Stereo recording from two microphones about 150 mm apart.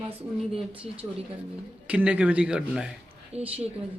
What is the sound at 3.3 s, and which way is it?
Speech, 45° right (ahead or behind).